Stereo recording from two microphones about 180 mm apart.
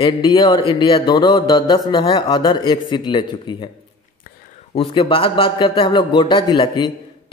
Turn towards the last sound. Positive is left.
turn(degrees=25)  # may be behind; listen again after turning